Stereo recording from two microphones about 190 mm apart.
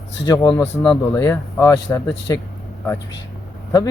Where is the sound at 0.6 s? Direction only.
5° left (ahead or behind).